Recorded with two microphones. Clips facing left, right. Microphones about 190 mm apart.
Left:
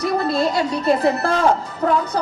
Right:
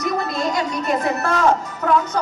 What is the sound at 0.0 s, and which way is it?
A woman's voice, 30° left (ahead or behind).